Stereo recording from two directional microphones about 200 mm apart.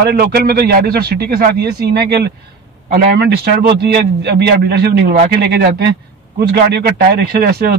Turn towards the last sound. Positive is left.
turn(degrees=-50)  # may be behind; listen again after turning